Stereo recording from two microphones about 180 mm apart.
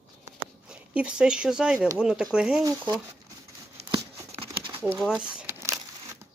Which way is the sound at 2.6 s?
20° right (ahead or behind).